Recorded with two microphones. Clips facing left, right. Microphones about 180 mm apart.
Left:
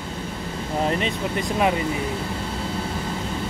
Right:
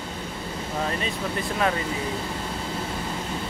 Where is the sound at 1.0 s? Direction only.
15° left (ahead or behind).